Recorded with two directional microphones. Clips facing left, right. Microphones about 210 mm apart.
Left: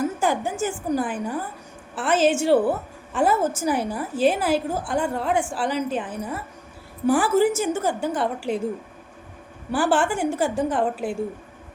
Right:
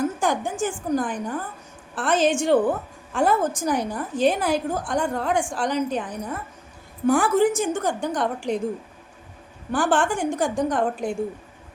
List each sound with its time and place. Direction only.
0.0 s a woman's voice: 5° left (ahead or behind)
9.7 s a woman's voice: 5° left (ahead or behind)